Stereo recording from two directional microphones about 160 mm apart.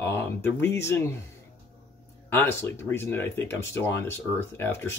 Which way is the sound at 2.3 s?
15° left (ahead or behind).